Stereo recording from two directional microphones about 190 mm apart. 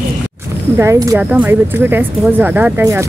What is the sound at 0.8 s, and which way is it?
Speech, 15° right (ahead or behind).